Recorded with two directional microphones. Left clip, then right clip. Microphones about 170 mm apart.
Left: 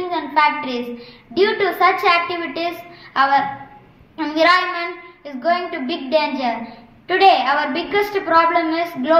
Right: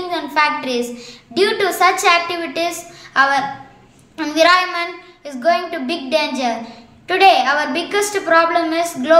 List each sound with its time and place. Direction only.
0.1 s a woman's voice: 20° right (ahead or behind)
1.3 s child singing: 20° right (ahead or behind)